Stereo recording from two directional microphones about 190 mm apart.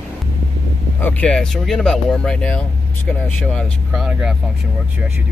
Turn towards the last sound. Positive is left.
turn(degrees=-5)  # may be behind; listen again after turning